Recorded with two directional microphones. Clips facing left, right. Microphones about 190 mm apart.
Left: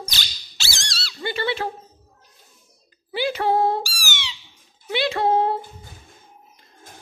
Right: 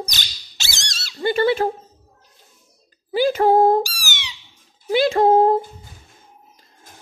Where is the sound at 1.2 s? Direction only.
45° right (ahead or behind).